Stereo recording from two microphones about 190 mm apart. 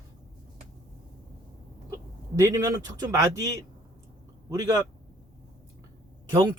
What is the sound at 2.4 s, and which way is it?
A man's voice, 15° right (ahead or behind).